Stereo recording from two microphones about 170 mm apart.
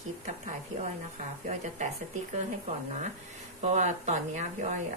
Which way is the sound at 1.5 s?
45° right (ahead or behind).